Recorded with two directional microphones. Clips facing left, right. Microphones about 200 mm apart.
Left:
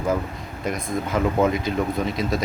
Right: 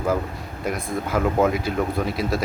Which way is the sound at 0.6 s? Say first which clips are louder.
Even; 5° right (ahead or behind).